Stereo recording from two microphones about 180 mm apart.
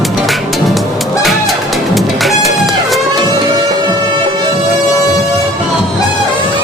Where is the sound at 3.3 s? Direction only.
25° right (ahead or behind).